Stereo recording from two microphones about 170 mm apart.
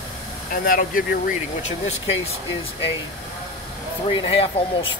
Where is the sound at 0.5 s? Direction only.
55° left (ahead or behind); by 2.4 s 40° left (ahead or behind).